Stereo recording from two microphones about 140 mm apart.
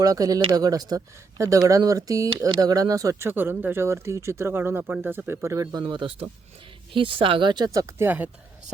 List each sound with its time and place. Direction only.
0.0 s speech: 25° right (ahead or behind)